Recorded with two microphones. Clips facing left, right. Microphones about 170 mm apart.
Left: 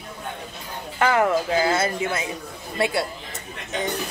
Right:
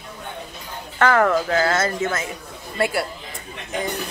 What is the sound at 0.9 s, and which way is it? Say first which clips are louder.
Speech: right 2 dB; 15° left (ahead or behind).